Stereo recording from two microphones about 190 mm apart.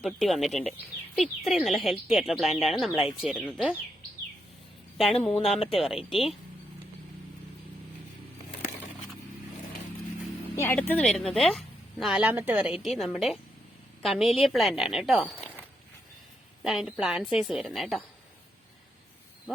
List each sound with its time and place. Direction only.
0.0 s speech: centre (ahead or behind)
5.1 s speech: 30° left (ahead or behind)
5.5 s speech: centre (ahead or behind)
10.5 s speech: 10° left (ahead or behind)
16.6 s speech: centre (ahead or behind)